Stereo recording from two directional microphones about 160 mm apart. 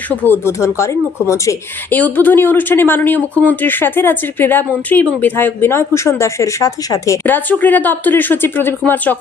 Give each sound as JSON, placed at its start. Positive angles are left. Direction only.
{"t": 0.2, "sound": "speech", "side_deg": 15}